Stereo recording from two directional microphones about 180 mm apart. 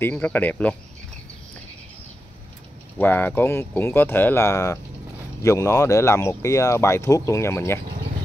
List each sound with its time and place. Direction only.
0.0 s speech: 10° left (ahead or behind)
3.0 s speech: 10° left (ahead or behind)